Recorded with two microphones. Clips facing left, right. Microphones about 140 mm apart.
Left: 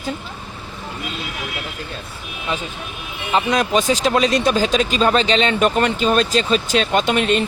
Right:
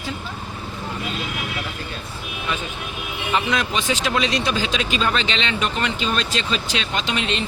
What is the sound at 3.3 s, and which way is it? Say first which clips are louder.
Speech: left 5 dB; 40° left (ahead or behind).